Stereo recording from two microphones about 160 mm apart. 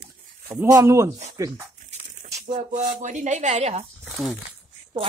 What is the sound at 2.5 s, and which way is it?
Speech, 50° right (ahead or behind).